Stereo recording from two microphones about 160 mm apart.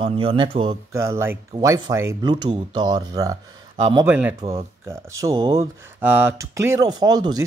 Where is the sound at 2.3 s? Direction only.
30° right (ahead or behind).